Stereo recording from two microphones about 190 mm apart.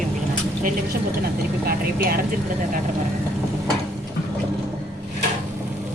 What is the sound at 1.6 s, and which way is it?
Speech, 50° right (ahead or behind).